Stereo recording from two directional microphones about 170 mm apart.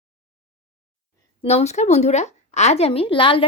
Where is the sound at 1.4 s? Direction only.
35° left (ahead or behind).